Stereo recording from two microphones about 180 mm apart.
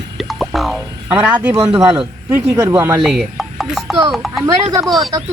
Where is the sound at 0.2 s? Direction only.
Centre (ahead or behind).